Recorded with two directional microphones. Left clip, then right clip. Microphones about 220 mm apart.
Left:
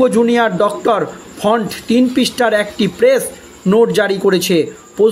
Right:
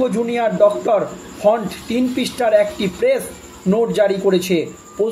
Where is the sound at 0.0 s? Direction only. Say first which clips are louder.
Left 6 dB; 40° left (ahead or behind).